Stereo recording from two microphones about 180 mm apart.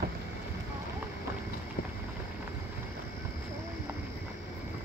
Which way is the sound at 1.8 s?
55° left (ahead or behind).